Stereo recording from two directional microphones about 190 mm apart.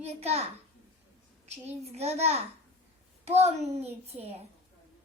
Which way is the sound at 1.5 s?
35° right (ahead or behind).